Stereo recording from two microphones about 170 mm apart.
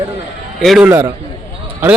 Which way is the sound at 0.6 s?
Centre (ahead or behind).